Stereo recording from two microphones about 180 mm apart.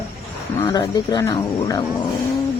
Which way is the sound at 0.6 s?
25° left (ahead or behind).